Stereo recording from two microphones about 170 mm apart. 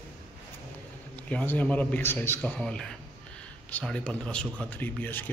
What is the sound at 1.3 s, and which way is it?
A man's voice, 10° left (ahead or behind).